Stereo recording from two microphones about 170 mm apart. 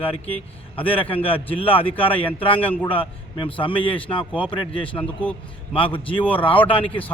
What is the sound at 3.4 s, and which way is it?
A man's voice, 30° left (ahead or behind).